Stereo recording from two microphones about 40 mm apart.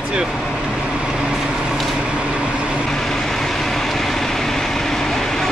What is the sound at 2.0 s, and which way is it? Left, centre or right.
Vehicle, right.